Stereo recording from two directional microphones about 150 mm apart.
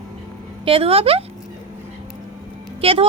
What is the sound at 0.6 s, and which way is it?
Speech, 40° right (ahead or behind).